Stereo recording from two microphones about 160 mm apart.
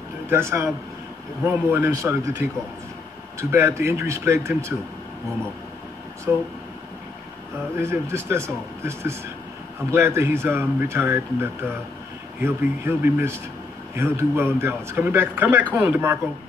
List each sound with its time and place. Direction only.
0.3 s speech: 15° right (ahead or behind)
6.3 s speech: 15° right (ahead or behind)
7.8 s speech: 15° right (ahead or behind)
12.4 s speech: 15° right (ahead or behind)